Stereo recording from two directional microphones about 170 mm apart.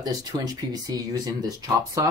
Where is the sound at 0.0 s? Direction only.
20° right (ahead or behind).